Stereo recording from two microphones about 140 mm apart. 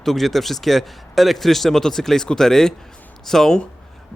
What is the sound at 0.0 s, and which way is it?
Speech, centre (ahead or behind).